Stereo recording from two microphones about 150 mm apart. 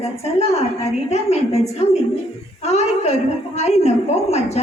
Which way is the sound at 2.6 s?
45° left (ahead or behind).